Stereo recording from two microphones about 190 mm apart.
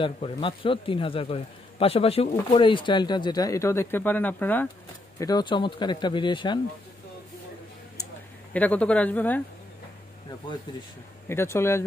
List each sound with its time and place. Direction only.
0.0 s a man's voice: 25° left (ahead or behind); by 4.6 s 10° left (ahead or behind)
5.2 s a man's voice: 20° left (ahead or behind)
8.5 s speech: 5° left (ahead or behind)
10.7 s a man's voice: 25° left (ahead or behind)
11.2 s speech: 15° left (ahead or behind)